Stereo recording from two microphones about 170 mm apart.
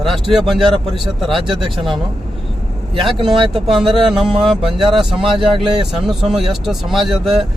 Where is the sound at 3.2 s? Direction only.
30° right (ahead or behind).